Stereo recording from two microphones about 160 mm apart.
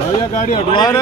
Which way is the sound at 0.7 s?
25° left (ahead or behind).